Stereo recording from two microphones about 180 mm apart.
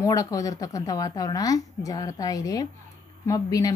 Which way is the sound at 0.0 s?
20° left (ahead or behind).